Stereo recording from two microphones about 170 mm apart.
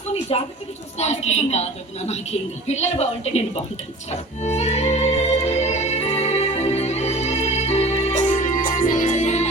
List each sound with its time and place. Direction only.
0.3 s a woman's voice: 35° left (ahead or behind)
4.1 s music: 40° left (ahead or behind)